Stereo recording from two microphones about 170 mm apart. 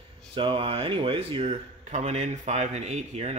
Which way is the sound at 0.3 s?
30° right (ahead or behind).